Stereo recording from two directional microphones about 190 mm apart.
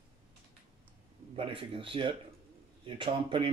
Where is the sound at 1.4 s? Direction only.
25° right (ahead or behind).